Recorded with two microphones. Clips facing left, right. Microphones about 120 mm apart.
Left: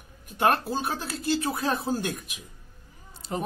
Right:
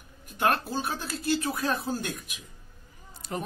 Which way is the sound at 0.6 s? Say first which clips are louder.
Left 2 dB; 20° left (ahead or behind).